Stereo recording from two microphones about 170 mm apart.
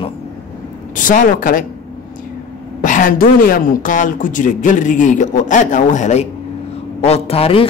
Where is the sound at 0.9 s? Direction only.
50° left (ahead or behind).